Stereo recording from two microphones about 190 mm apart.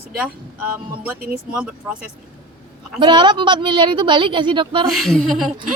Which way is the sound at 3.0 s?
25° right (ahead or behind).